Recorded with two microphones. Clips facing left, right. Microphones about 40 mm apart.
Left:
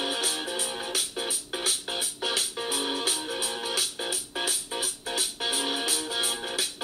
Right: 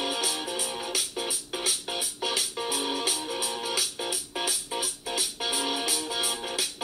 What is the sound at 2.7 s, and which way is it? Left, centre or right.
Music, centre.